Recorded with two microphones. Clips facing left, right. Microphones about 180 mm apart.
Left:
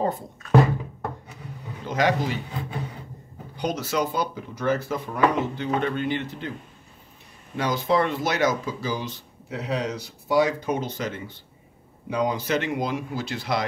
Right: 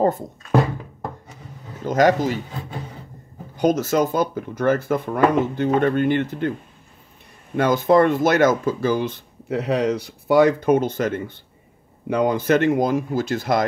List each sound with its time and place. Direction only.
1.9 s speech: 45° right (ahead or behind)
3.5 s speech: 45° right (ahead or behind)
7.5 s speech: 50° right (ahead or behind)